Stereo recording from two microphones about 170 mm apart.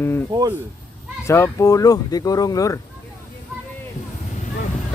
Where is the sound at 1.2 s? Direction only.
15° left (ahead or behind).